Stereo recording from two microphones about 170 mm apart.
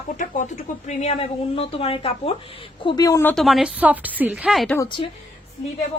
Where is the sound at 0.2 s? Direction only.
45° left (ahead or behind); by 3.3 s 20° left (ahead or behind).